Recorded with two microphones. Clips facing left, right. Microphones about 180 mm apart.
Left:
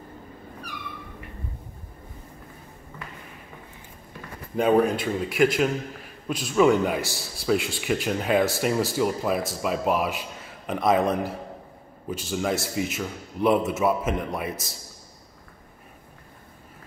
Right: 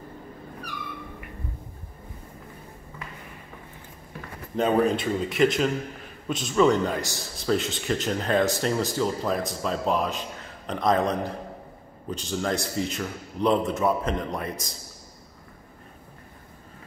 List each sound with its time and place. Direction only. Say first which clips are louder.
4.6 s a man's voice: left 2 dB; 5° left (ahead or behind)
7.0 s a man's voice: left 1 dB; 15° right (ahead or behind)
7.4 s a man's voice: left 1 dB; 5° left (ahead or behind)